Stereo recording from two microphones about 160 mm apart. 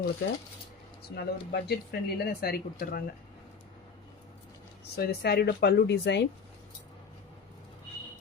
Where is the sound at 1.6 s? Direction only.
85° left; by 3.0 s 70° left (ahead or behind).